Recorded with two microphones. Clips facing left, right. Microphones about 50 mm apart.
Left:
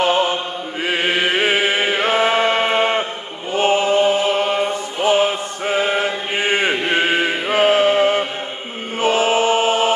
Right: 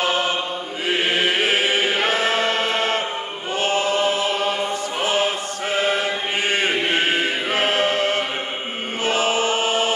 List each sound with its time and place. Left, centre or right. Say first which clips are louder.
0.0 s chant: left 4 dB; left
5.8 s chant: left 2 dB; centre
7.5 s chant: left 7 dB; centre